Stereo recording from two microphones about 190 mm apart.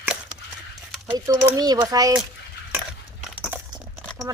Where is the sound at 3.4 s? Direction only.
5° right (ahead or behind).